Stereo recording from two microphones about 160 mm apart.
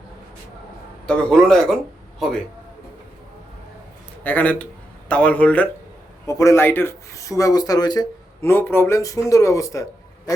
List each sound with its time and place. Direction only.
1.0 s a man's voice: 5° left (ahead or behind)
4.2 s a man's voice: 10° left (ahead or behind)
6.2 s speech: 20° left (ahead or behind)